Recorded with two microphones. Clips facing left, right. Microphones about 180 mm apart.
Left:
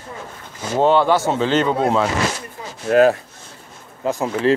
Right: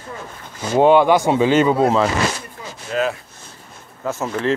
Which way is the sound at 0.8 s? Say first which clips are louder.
Right 3 dB; 15° right (ahead or behind).